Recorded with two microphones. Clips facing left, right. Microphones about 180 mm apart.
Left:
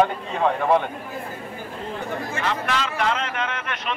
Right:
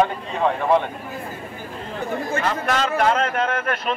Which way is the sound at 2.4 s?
45° right (ahead or behind).